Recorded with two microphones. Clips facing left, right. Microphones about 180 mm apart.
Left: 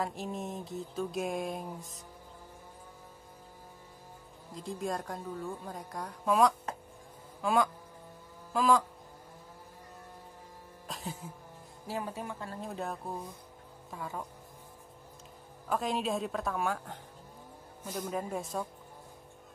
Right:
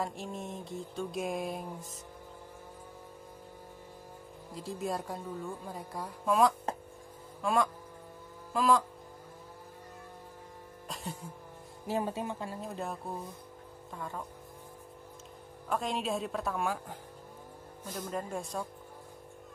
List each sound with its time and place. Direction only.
0.0 s music: centre (ahead or behind)
4.6 s music: centre (ahead or behind)
10.9 s a sound: centre (ahead or behind)
11.9 s speech: 25° right (ahead or behind)
12.5 s music: centre (ahead or behind)
13.9 s speech: 5° left (ahead or behind)
15.7 s music: centre (ahead or behind)